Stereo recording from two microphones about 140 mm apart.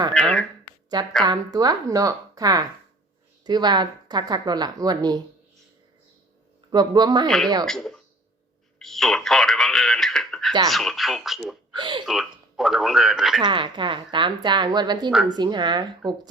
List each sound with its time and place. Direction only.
0.1 s speech: 5° left (ahead or behind)
1.2 s speech: 30° right (ahead or behind)
6.7 s speech: 30° right (ahead or behind)
7.3 s speech: centre (ahead or behind)
11.7 s speech: 35° right (ahead or behind)
12.0 s speech: centre (ahead or behind)
13.4 s speech: 35° right (ahead or behind)